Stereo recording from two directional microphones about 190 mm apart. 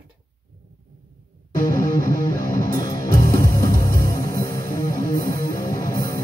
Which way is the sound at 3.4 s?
15° left (ahead or behind).